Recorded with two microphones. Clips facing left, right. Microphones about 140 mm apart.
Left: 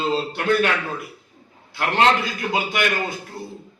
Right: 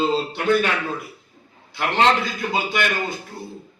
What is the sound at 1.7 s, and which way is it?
Speech, 5° left (ahead or behind).